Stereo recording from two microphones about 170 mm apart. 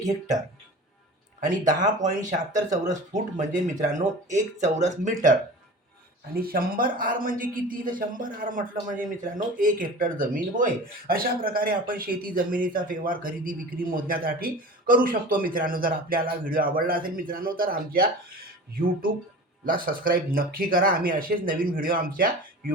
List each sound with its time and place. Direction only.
1.4 s speech: 50° right (ahead or behind)
6.3 s a man's voice: 60° right (ahead or behind)
19.6 s a man's voice: 55° right (ahead or behind)